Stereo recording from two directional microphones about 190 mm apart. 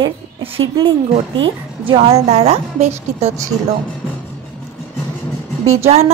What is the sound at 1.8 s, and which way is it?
A woman's voice, 30° right (ahead or behind).